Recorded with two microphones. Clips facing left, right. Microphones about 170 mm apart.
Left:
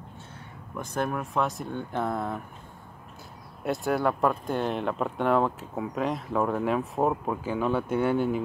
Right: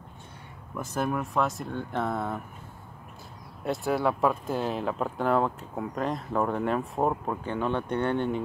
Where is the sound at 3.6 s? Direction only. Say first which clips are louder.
Left 1 dB; centre (ahead or behind).